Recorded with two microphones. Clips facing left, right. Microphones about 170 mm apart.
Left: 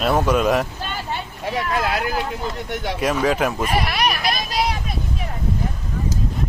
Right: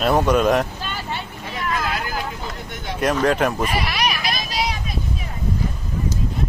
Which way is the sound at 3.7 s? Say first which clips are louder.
Left 2 dB; 50° left (ahead or behind).